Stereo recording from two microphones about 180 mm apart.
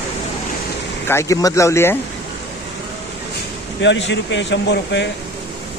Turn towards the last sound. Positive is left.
turn(degrees=75)  # may be behind; listen again after turning